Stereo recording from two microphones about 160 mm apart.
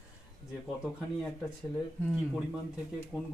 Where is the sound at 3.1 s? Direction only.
5° right (ahead or behind).